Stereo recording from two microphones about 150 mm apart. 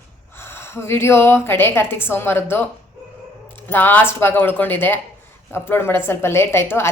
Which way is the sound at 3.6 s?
15° left (ahead or behind).